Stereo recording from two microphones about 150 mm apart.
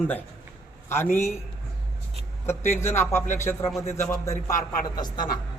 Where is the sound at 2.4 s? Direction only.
15° left (ahead or behind).